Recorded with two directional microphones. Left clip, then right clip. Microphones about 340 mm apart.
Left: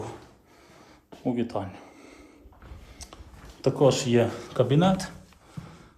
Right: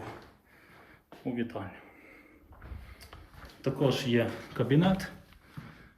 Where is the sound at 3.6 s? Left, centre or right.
Centre.